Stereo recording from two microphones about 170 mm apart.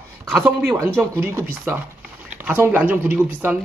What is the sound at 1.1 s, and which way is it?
Speech, 15° right (ahead or behind).